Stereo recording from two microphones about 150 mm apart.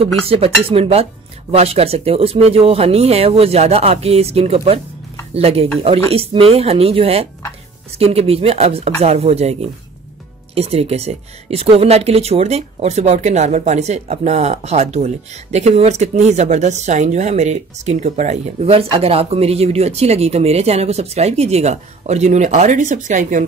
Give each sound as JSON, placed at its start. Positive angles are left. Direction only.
{"t": 0.3, "sound": "speech", "side_deg": -40}